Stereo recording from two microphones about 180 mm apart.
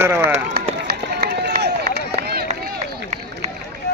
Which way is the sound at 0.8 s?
55° right (ahead or behind).